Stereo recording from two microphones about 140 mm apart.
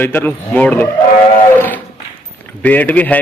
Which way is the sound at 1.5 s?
15° left (ahead or behind).